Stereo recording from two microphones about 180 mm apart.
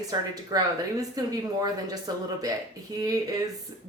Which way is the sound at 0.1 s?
20° right (ahead or behind).